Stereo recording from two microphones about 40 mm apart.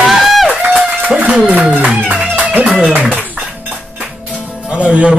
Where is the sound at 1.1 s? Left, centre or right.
Right.